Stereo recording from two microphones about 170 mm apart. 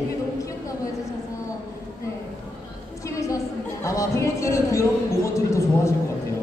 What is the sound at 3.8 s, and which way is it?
A man's voice, 15° left (ahead or behind).